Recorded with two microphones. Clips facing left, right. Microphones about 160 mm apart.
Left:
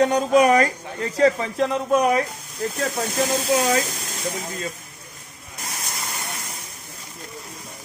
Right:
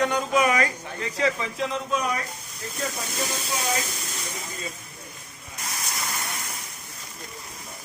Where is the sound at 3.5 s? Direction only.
90° left.